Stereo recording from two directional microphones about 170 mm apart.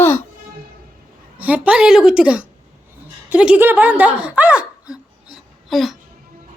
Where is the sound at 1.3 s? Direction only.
10° right (ahead or behind).